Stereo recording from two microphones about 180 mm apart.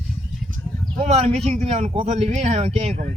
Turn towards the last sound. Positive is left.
turn(degrees=-40)  # may be behind; listen again after turning